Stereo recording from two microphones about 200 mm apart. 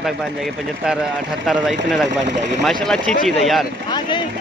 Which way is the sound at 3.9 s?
20° left (ahead or behind).